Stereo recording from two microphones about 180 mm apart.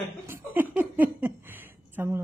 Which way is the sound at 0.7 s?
10° right (ahead or behind).